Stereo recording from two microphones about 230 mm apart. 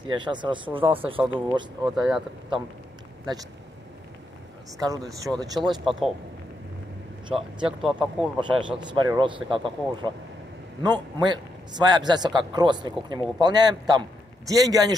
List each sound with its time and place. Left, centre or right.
0.2 s a man's voice: right
1.2 s speech: centre
4.7 s speech: centre
5.9 s speech: centre
7.2 s speech: centre
8.8 s a man's voice: centre